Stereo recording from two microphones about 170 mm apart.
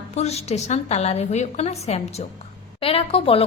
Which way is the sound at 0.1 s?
40° left (ahead or behind).